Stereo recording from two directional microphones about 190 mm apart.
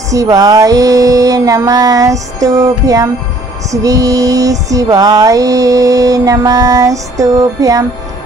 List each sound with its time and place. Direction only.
0.1 s music: 15° right (ahead or behind)